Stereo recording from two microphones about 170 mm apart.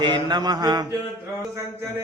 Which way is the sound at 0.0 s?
25° right (ahead or behind).